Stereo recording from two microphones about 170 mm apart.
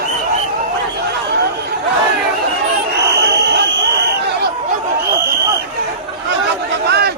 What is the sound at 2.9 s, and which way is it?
Crowd, 80° right.